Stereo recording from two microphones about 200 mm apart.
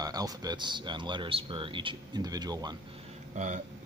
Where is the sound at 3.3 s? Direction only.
40° right (ahead or behind).